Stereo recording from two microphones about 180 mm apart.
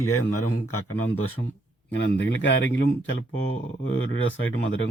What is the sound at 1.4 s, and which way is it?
Speech, 60° left (ahead or behind).